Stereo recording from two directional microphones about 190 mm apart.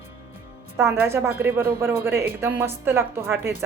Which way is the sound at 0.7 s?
15° right (ahead or behind).